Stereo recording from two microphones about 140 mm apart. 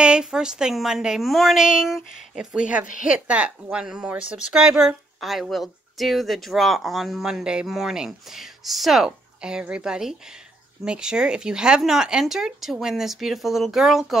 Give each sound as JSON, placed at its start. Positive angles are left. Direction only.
{"t": 0.0, "sound": "speech", "side_deg": -5}
{"t": 2.9, "sound": "a woman's voice", "side_deg": 65}
{"t": 3.3, "sound": "speech", "side_deg": -10}